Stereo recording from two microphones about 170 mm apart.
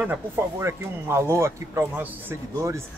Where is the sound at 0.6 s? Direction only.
15° right (ahead or behind).